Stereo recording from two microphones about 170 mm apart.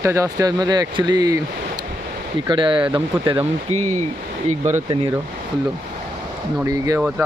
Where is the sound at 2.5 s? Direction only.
30° right (ahead or behind).